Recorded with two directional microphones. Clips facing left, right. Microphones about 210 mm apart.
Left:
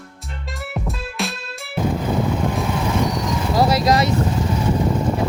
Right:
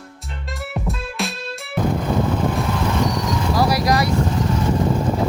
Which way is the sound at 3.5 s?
25° left (ahead or behind).